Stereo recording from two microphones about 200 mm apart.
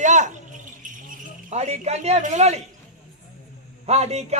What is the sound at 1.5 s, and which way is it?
Speech, 35° right (ahead or behind).